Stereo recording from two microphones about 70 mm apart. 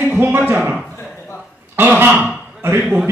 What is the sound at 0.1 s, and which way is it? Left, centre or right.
Speech, right.